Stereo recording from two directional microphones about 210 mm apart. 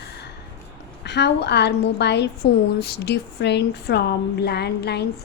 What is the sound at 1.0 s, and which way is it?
Speech, 55° left (ahead or behind).